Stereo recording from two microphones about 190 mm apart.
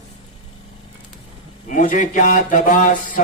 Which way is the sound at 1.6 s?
45° left (ahead or behind).